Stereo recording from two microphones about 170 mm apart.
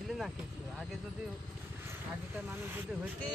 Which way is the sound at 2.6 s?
10° right (ahead or behind).